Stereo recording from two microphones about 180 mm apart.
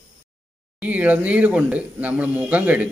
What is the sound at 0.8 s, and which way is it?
Speech, 10° right (ahead or behind).